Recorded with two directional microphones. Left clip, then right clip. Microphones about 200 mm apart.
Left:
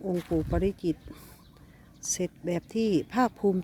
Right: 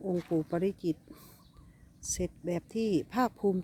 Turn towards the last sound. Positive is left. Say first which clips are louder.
# left 4 dB
turn(degrees=0)  # may be behind; listen again after turning